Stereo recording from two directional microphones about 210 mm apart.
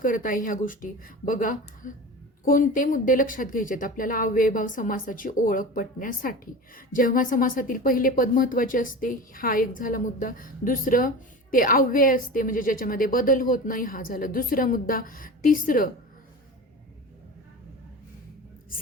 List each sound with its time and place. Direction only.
0.0 s speech: 40° left (ahead or behind)